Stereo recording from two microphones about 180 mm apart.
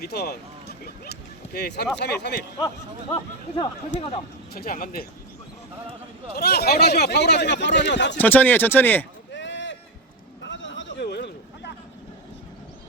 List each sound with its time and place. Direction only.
0.0 s a sound: 60° left (ahead or behind)
2.0 s speech: 65° left (ahead or behind)
2.6 s speech: 15° left (ahead or behind)
4.5 s speech: 55° left (ahead or behind)
6.3 s speech: 60° left (ahead or behind)
8.2 s speech: 10° left (ahead or behind)
9.3 s boat: 85° left
10.4 s a sound: 90° left; by 11.7 s 70° left (ahead or behind)